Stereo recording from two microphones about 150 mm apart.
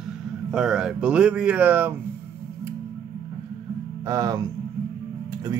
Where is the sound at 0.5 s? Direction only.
5° right (ahead or behind).